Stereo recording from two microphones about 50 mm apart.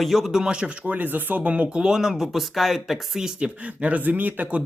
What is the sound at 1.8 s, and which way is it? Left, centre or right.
Speech, centre.